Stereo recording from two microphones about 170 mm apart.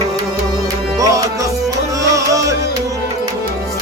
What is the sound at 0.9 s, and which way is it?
Tabla, 20° right (ahead or behind).